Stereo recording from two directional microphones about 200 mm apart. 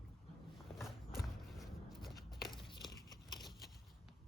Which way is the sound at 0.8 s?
Centre (ahead or behind).